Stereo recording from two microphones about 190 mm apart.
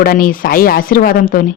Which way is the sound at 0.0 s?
50° left (ahead or behind).